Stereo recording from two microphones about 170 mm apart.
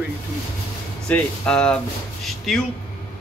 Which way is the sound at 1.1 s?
5° left (ahead or behind).